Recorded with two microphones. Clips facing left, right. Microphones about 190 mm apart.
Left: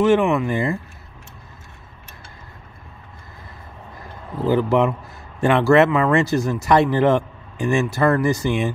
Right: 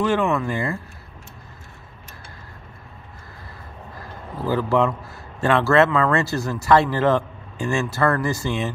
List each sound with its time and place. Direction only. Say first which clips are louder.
0.0 s speech: left 4 dB; 15° left (ahead or behind)
4.5 s speech: left 2 dB; 20° left (ahead or behind)